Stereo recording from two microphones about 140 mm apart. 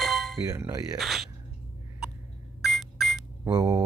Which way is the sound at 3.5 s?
30° right (ahead or behind).